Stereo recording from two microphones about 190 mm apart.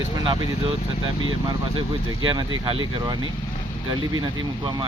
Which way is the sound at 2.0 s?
25° right (ahead or behind).